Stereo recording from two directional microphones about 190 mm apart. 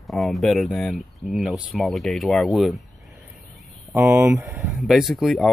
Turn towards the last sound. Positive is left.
turn(degrees=0)  # may be behind; listen again after turning